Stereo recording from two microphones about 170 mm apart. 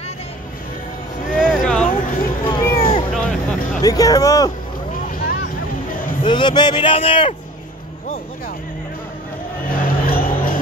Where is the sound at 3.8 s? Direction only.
20° left (ahead or behind).